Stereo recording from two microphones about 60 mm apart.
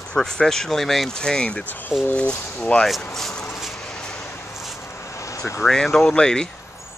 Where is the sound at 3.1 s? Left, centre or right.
Centre.